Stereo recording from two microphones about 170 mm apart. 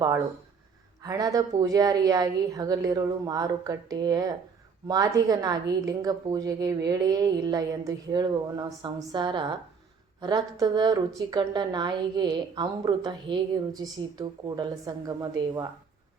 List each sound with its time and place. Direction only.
1.0 s a woman's voice: 20° right (ahead or behind)